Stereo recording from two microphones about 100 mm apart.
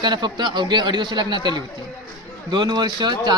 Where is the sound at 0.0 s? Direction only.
45° right (ahead or behind).